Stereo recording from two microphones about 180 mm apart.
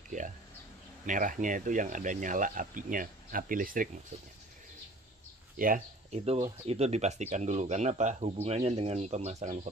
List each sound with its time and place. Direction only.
0.1 s a sound: 45° right (ahead or behind)
1.0 s speech: 45° right (ahead or behind)
6.1 s speech: 35° right (ahead or behind)